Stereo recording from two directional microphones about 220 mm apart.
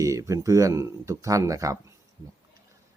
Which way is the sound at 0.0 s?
15° right (ahead or behind).